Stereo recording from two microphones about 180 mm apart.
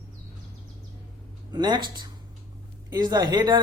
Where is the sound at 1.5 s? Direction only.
25° right (ahead or behind).